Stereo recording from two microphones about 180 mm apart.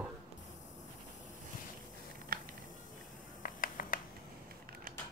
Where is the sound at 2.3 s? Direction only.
55° right (ahead or behind).